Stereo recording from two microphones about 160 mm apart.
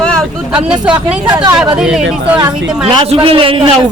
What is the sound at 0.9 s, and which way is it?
Speech, 25° right (ahead or behind).